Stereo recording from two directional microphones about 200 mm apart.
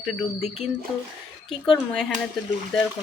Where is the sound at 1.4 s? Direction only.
Centre (ahead or behind).